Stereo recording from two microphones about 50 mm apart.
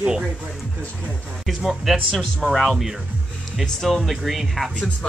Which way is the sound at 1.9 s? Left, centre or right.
Centre.